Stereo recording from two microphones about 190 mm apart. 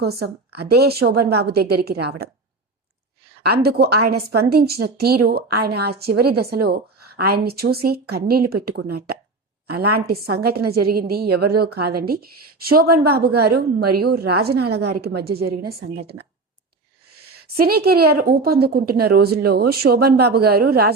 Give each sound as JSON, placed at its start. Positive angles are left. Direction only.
{"t": 0.0, "sound": "a woman's voice", "side_deg": -55}
{"t": 3.5, "sound": "a woman's voice", "side_deg": -55}
{"t": 17.4, "sound": "a woman's voice", "side_deg": -55}